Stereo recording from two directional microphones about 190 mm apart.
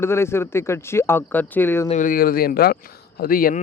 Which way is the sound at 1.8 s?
40° left (ahead or behind).